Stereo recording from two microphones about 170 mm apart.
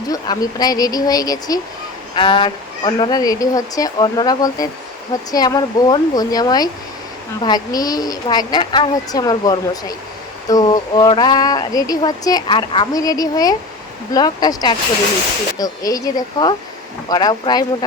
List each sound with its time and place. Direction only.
0.1 s speech: 20° left (ahead or behind)